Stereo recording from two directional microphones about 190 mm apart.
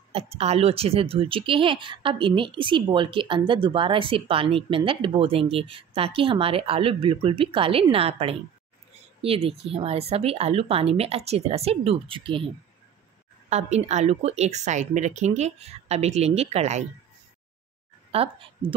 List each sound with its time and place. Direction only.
0.1 s speech: 30° right (ahead or behind)
13.5 s speech: 35° right (ahead or behind)
18.1 s a woman's voice: 30° right (ahead or behind)